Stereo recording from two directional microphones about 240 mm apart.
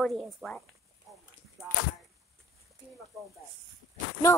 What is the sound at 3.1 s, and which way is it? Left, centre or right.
Speech, centre.